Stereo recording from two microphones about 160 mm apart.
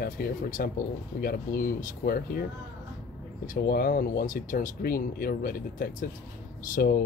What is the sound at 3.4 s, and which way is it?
Speech, 65° left (ahead or behind).